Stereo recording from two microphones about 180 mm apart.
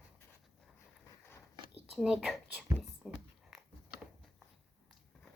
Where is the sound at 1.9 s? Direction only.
5° right (ahead or behind).